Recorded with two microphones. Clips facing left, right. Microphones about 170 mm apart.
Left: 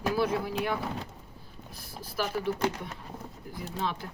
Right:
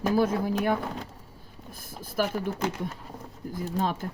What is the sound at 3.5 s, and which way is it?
Speech, 45° right (ahead or behind).